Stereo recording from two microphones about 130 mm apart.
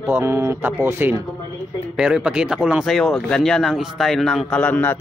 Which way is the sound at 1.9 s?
5° right (ahead or behind).